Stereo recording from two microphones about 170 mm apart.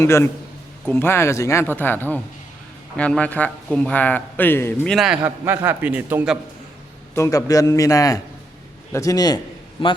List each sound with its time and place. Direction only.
0.0 s a man's voice: 15° left (ahead or behind)
4.9 s a man's voice: 5° right (ahead or behind)
7.2 s a man's voice: 20° left (ahead or behind)